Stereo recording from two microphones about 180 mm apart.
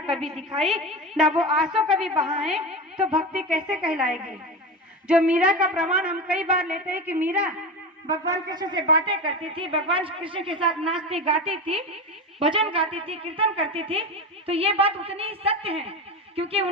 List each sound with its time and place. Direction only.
0.2 s a woman's voice: centre (ahead or behind)
1.3 s a woman's voice: 35° right (ahead or behind)
1.5 s a woman's voice: 5° right (ahead or behind)
8.3 s a woman's voice: 20° right (ahead or behind)